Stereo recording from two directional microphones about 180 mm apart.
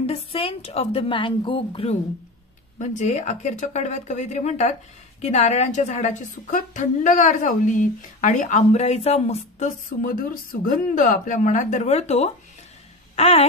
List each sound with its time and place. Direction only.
0.0 s a woman's voice: 30° left (ahead or behind)
10.0 s a woman's voice: 50° left (ahead or behind); by 12.3 s 35° left (ahead or behind)
13.1 s a sound: 35° left (ahead or behind)